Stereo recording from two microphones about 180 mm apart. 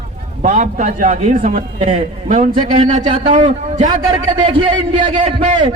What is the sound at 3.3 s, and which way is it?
A man's voice, 30° right (ahead or behind).